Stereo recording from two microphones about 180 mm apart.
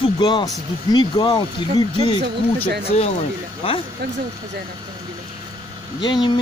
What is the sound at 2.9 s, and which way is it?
Speech, 40° left (ahead or behind).